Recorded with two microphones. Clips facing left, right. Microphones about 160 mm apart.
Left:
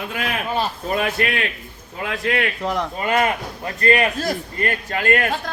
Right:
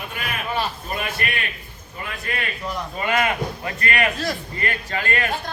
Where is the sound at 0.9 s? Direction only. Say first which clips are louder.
Left 6 dB; 90° left.